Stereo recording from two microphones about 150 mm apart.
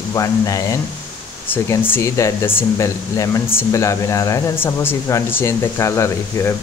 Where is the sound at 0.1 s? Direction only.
20° left (ahead or behind).